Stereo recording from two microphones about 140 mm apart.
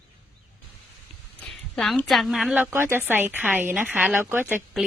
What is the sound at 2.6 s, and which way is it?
Speech, 15° right (ahead or behind).